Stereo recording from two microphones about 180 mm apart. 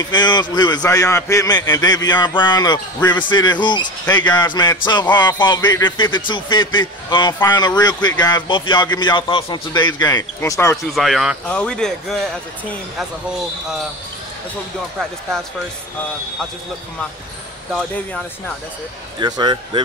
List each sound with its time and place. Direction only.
0.0 s a man's voice: 25° left (ahead or behind)
11.0 s speech: centre (ahead or behind)
19.1 s speech: 25° right (ahead or behind)